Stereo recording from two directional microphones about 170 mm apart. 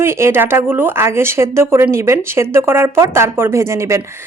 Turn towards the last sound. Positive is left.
turn(degrees=-15)  # may be behind; listen again after turning